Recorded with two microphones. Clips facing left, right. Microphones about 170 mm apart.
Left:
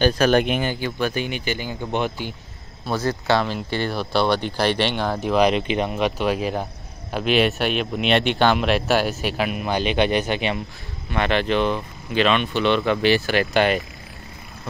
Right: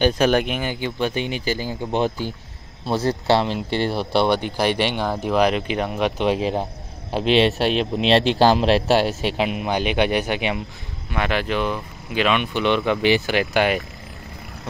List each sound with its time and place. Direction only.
0.0 s a man's voice: 20° right (ahead or behind)
0.3 s speech: 5° right (ahead or behind)
0.7 s a man's voice: 25° right (ahead or behind)
4.4 s speech: 10° right (ahead or behind)
6.1 s a man's voice: 25° right (ahead or behind)